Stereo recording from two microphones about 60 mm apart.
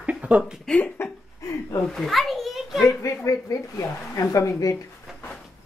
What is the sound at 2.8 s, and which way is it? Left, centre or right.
A woman's voice, left.